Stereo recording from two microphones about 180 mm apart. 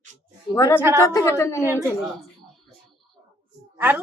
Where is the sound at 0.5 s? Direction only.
15° left (ahead or behind).